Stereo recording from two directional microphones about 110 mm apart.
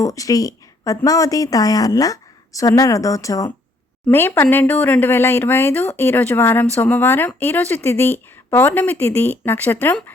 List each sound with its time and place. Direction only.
0.0 s speech: 30° left (ahead or behind)